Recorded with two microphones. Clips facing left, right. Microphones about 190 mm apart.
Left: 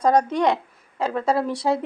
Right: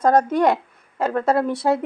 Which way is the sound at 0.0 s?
5° right (ahead or behind).